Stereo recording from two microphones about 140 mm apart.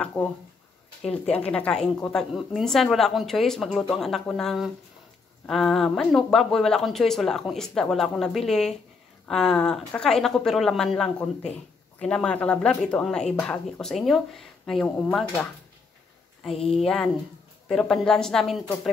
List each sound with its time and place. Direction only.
0.0 s speech: 10° left (ahead or behind)
16.6 s speech: 5° left (ahead or behind)